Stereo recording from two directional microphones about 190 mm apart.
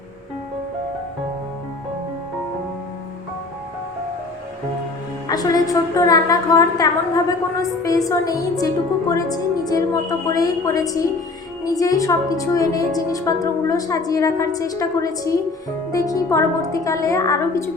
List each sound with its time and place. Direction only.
5.3 s a woman's voice: 20° left (ahead or behind)